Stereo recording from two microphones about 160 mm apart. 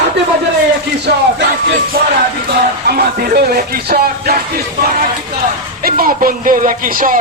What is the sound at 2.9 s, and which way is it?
A man's voice, 70° right (ahead or behind).